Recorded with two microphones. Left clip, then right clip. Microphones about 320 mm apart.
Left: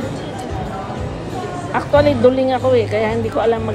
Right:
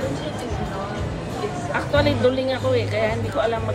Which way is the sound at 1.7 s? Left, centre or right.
Centre.